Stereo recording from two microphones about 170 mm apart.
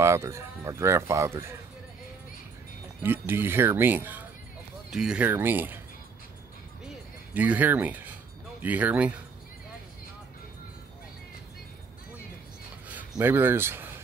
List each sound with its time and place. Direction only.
0.0 s speech: 15° right (ahead or behind)
3.0 s speech: 10° right (ahead or behind)
7.3 s speech: 10° right (ahead or behind)
13.2 s speech: 15° right (ahead or behind)